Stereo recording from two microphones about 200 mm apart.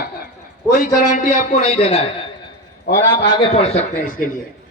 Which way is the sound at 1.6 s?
30° left (ahead or behind).